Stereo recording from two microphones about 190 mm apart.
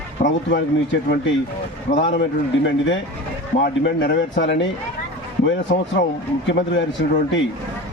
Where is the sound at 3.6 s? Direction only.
65° left (ahead or behind).